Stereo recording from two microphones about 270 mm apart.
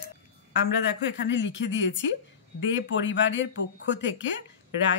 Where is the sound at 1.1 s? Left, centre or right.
Left.